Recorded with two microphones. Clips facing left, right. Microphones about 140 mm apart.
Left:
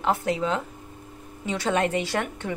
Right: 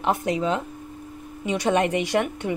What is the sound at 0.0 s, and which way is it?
A woman's voice, 15° right (ahead or behind).